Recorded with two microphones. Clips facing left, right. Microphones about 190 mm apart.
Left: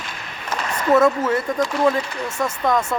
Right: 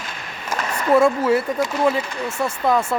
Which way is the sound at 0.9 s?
10° right (ahead or behind).